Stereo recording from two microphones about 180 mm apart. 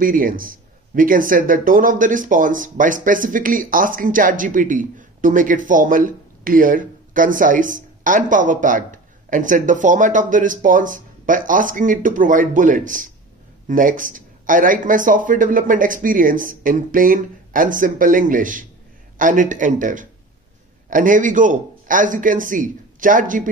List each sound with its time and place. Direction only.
0.0 s speech: 50° right (ahead or behind)